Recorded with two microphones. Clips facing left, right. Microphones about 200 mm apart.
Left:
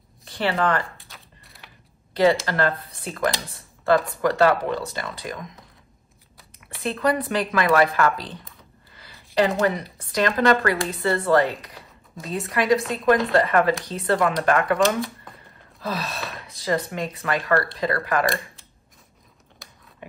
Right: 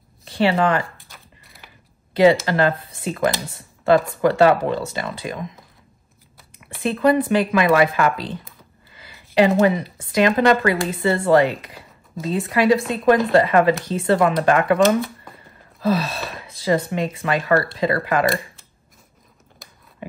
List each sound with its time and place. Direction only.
0.3 s speech: 25° right (ahead or behind)
0.9 s a sound: centre (ahead or behind)
2.4 s a woman's voice: 20° right (ahead or behind)
3.3 s speech: centre (ahead or behind)
4.4 s a woman's voice: 25° right (ahead or behind)
6.8 s a woman's voice: 25° right (ahead or behind)
9.0 s a sound: 20° right (ahead or behind)
10.1 s a woman's voice: 20° right (ahead or behind)
14.8 s speech: centre (ahead or behind)
15.8 s a woman's voice: 30° right (ahead or behind)
16.2 s speech: centre (ahead or behind)
16.4 s a woman's voice: 25° right (ahead or behind)
18.2 s speech: centre (ahead or behind)
19.6 s a sound: centre (ahead or behind)